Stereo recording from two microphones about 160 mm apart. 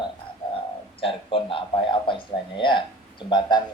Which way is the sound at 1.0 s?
35° left (ahead or behind).